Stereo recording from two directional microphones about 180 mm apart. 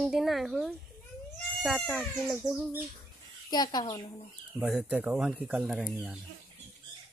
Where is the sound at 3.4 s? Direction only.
20° left (ahead or behind).